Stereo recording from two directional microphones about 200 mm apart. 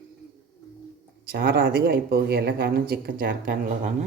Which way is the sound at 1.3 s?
50° right (ahead or behind).